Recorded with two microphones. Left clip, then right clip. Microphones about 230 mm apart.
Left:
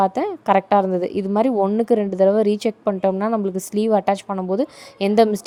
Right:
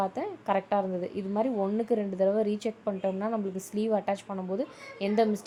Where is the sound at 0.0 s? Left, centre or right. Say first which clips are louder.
Left 12 dB; left.